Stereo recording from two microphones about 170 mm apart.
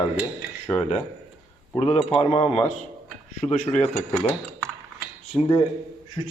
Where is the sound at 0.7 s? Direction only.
10° left (ahead or behind).